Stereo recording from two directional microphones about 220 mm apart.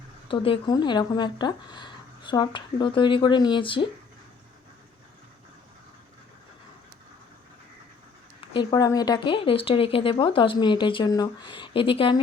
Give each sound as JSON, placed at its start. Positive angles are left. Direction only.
{"t": 0.3, "sound": "speech", "side_deg": 25}
{"t": 8.5, "sound": "speech", "side_deg": 15}